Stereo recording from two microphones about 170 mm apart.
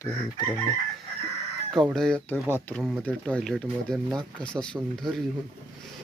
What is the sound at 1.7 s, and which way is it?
Speech, 5° left (ahead or behind).